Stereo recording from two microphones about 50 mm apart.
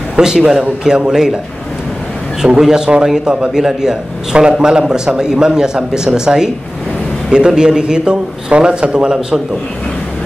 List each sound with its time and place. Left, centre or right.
0.1 s a man's voice: centre
2.4 s a man's voice: centre